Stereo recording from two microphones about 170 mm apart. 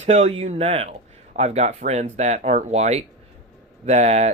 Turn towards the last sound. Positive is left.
turn(degrees=-40)  # may be behind; listen again after turning